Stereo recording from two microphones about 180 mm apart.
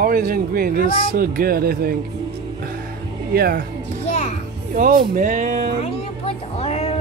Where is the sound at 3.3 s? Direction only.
60° right (ahead or behind).